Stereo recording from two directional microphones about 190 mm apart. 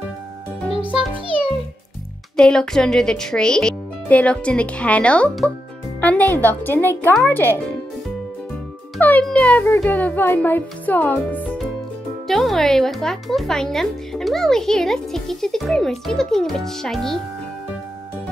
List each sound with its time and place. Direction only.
0.7 s a child's voice: 30° right (ahead or behind)
2.3 s a child's voice: 5° left (ahead or behind)
8.9 s a child's voice: 5° left (ahead or behind)